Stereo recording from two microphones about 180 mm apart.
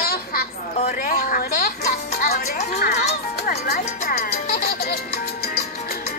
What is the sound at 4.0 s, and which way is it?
Music, 50° left (ahead or behind).